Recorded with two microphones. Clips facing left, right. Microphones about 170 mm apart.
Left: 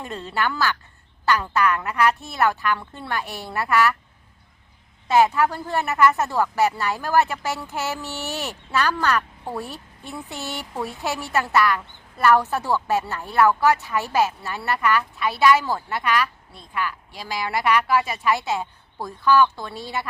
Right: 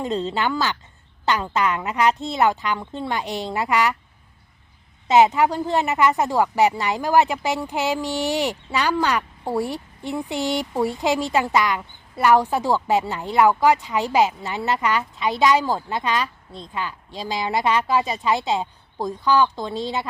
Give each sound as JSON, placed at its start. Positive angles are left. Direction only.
{"t": 0.0, "sound": "a woman's voice", "side_deg": -20}
{"t": 5.0, "sound": "speech", "side_deg": -20}